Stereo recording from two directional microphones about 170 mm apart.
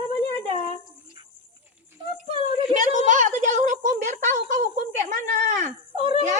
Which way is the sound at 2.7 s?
45° right (ahead or behind).